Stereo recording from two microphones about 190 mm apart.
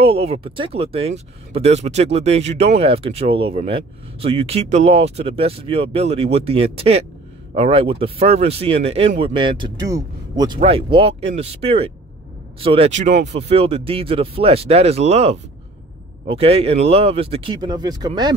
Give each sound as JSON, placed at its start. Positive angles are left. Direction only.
{"t": 0.0, "sound": "speech", "side_deg": -30}